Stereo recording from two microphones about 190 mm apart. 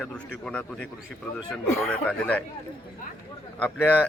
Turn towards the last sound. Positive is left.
turn(degrees=10)  # may be behind; listen again after turning